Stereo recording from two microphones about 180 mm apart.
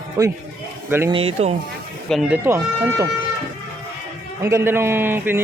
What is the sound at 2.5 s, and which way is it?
Speech, 15° right (ahead or behind).